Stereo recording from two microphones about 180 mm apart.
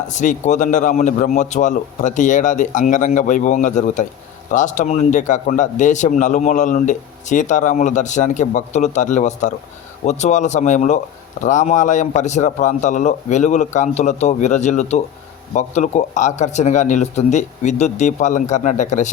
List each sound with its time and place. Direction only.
0.1 s a man's voice: 45° left (ahead or behind)